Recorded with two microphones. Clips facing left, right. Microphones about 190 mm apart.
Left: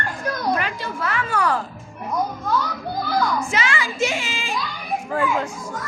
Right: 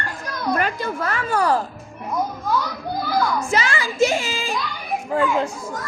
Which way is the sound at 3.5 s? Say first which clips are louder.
Right 2 dB; 40° right (ahead or behind).